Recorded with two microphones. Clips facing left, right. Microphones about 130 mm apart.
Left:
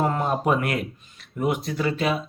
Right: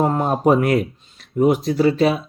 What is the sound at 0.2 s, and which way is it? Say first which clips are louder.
Speech: right 6 dB; 40° right (ahead or behind).